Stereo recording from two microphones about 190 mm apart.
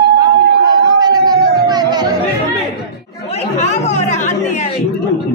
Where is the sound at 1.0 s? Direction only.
20° right (ahead or behind).